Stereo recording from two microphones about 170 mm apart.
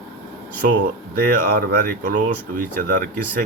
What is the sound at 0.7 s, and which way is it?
Speech, 60° right (ahead or behind).